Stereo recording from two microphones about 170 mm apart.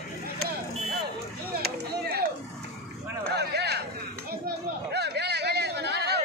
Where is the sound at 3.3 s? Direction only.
75° right (ahead or behind).